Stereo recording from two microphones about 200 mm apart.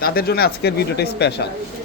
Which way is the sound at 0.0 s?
50° left (ahead or behind).